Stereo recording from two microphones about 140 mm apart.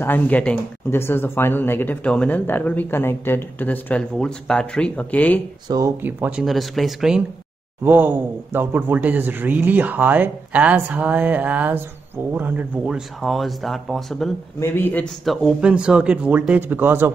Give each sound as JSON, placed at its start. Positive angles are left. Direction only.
{"t": 0.0, "sound": "speech", "side_deg": 10}
{"t": 5.7, "sound": "speech", "side_deg": -25}
{"t": 6.0, "sound": "speech", "side_deg": -10}
{"t": 6.4, "sound": "speech", "side_deg": 0}
{"t": 14.6, "sound": "speech", "side_deg": 15}
{"t": 15.0, "sound": "speech", "side_deg": 0}